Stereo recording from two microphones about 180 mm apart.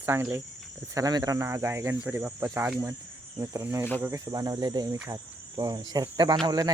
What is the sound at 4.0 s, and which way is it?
Cricket, 20° right (ahead or behind).